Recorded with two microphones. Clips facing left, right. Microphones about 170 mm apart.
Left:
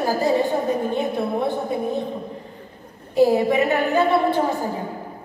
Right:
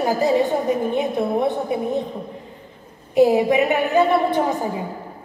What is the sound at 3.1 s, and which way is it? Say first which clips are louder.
A woman's voice: right 2 dB; 20° right (ahead or behind).